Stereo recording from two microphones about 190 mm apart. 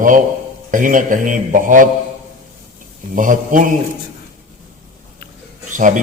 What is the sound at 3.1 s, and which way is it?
Speech, 45° right (ahead or behind).